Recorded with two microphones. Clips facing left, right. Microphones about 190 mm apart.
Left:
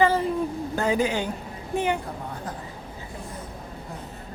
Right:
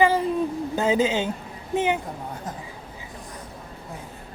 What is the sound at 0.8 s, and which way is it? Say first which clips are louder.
Speech: right 2 dB; 20° right (ahead or behind).